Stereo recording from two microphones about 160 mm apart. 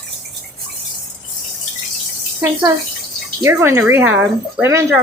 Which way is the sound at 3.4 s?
15° right (ahead or behind).